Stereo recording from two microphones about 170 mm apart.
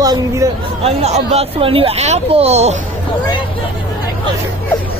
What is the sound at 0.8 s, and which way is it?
Speech, 40° right (ahead or behind).